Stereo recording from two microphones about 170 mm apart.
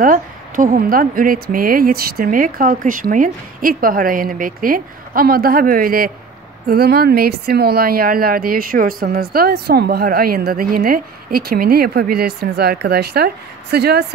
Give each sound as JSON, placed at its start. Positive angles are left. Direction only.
{"t": 0.0, "sound": "a woman's voice", "side_deg": -50}